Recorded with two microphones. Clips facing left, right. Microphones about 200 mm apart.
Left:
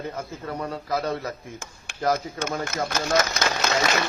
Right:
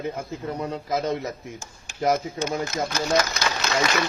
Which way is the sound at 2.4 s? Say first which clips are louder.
Right 2 dB; 55° left (ahead or behind).